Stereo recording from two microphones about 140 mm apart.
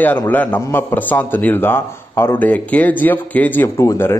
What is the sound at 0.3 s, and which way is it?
A man's voice, 10° left (ahead or behind).